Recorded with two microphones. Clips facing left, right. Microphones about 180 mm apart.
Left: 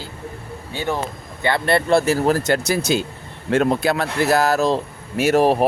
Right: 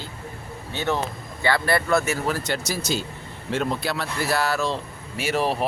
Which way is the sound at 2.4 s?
60° left (ahead or behind).